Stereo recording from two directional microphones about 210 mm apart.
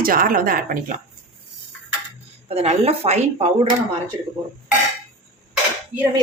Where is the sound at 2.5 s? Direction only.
30° right (ahead or behind).